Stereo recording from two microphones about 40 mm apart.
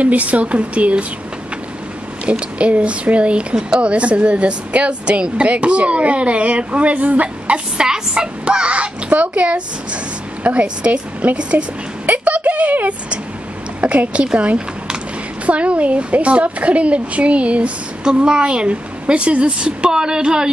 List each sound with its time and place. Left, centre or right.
0.0 s speech: right
2.3 s a woman's voice: right
7.8 s a woman's voice: centre
18.0 s a woman's voice: right